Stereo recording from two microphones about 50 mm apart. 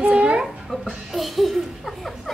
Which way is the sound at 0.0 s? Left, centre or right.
Centre.